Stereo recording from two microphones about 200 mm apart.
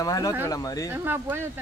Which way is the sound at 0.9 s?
10° right (ahead or behind).